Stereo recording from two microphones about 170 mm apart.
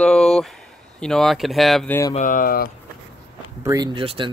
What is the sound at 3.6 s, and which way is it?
Speech, 25° right (ahead or behind).